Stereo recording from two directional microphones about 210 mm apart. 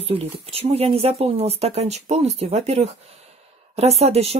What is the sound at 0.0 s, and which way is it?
Speech, 25° right (ahead or behind).